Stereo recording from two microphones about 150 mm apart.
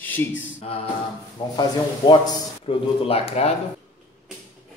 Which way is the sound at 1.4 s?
30° left (ahead or behind).